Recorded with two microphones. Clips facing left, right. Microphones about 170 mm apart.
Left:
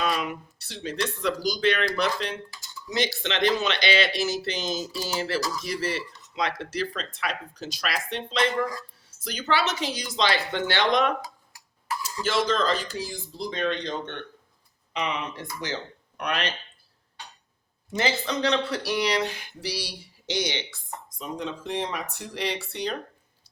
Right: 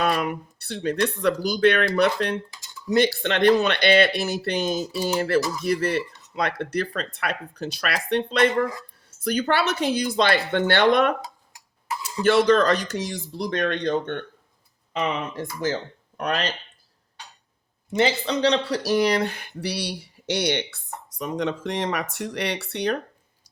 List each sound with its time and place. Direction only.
0.0 s speech: 55° right (ahead or behind)
12.2 s speech: 65° right (ahead or behind); by 16.6 s 45° right (ahead or behind)
17.9 s speech: 30° right (ahead or behind); by 20.7 s 60° right (ahead or behind)
21.2 s speech: 80° right